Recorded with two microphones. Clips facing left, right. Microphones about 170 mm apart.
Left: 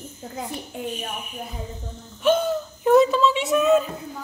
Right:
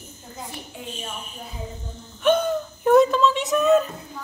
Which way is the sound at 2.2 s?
5° left (ahead or behind).